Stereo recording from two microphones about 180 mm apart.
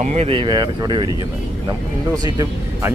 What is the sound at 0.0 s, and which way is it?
Speech, 35° right (ahead or behind).